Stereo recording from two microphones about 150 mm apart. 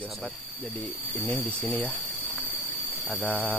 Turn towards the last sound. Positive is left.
turn(degrees=10)  # may be behind; listen again after turning